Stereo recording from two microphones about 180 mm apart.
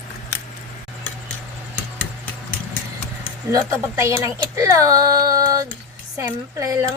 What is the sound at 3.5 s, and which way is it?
Speech, 15° right (ahead or behind).